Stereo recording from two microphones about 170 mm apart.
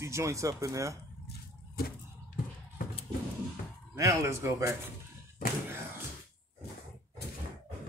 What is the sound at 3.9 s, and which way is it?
Speech, 20° right (ahead or behind).